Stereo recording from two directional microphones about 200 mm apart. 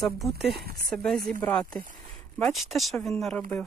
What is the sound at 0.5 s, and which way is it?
Speech, 50° right (ahead or behind).